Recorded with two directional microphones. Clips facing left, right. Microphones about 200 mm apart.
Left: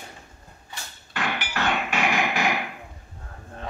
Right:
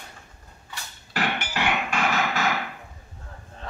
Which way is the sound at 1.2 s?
55° right (ahead or behind).